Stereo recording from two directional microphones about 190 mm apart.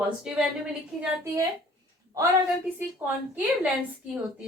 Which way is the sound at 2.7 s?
10° right (ahead or behind).